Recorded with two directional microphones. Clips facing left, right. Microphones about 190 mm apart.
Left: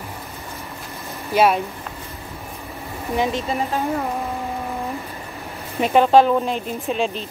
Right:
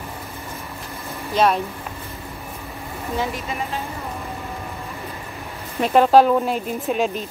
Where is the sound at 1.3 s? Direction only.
10° left (ahead or behind).